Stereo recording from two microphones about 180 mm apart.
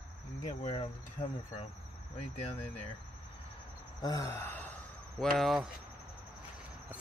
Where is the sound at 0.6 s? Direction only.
30° left (ahead or behind).